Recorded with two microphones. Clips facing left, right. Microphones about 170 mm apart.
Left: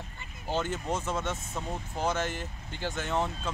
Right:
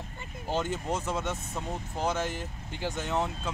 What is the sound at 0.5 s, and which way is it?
Speech, 5° right (ahead or behind).